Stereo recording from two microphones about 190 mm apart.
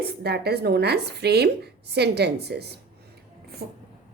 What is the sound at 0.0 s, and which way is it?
Speech, 60° right (ahead or behind).